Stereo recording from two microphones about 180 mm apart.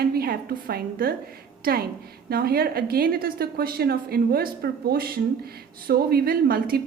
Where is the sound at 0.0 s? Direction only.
60° right (ahead or behind).